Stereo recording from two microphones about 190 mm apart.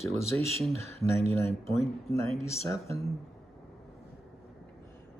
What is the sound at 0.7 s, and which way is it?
Speech, 90° right.